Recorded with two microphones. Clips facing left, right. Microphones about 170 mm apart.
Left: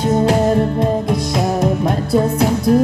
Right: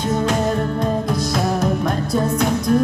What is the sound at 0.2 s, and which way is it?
Music, 30° left (ahead or behind).